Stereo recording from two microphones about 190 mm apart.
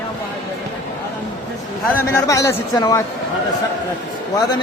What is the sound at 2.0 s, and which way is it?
Speech, 15° left (ahead or behind).